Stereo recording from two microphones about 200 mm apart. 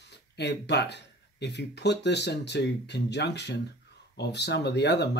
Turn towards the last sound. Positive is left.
turn(degrees=60)  # may be behind; listen again after turning